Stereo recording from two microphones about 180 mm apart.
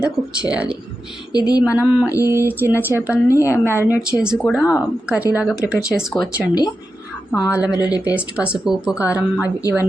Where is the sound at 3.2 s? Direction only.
15° left (ahead or behind).